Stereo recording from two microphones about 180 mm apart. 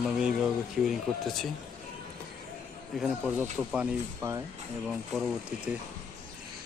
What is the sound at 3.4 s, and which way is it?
Speech, 10° right (ahead or behind).